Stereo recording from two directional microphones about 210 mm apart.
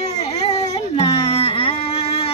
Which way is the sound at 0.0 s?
30° left (ahead or behind).